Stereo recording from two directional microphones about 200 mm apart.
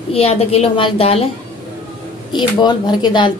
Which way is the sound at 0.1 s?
30° left (ahead or behind).